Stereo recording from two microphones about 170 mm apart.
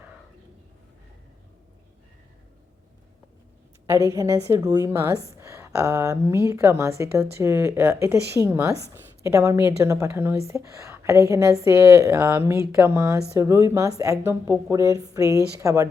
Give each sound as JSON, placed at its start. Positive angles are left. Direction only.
{"t": 4.1, "sound": "a woman's voice", "side_deg": -20}